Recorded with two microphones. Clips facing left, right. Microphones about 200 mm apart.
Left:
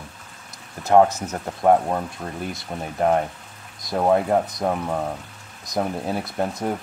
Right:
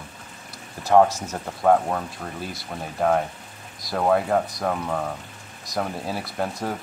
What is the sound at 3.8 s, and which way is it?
Speech, 15° left (ahead or behind).